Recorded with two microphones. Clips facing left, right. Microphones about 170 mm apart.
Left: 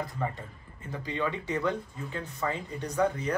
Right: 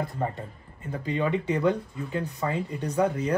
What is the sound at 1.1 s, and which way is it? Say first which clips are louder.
Speech: right 5 dB; 15° right (ahead or behind).